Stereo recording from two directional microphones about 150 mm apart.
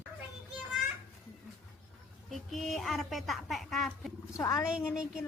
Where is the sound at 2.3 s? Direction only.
Centre (ahead or behind).